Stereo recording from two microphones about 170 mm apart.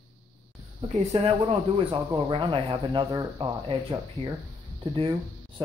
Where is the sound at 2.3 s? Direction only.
30° right (ahead or behind).